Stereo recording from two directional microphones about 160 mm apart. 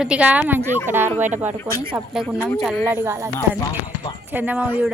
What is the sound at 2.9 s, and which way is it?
Speech, 15° right (ahead or behind).